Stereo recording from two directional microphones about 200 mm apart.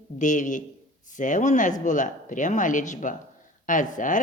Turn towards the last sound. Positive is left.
turn(degrees=40)  # may be behind; listen again after turning